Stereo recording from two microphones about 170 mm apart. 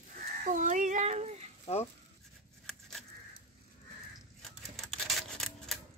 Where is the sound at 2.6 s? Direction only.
5° left (ahead or behind).